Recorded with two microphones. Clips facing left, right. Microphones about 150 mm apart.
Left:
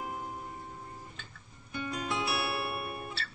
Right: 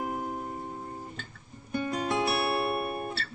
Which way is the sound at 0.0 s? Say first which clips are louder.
Right 6 dB; 45° right (ahead or behind).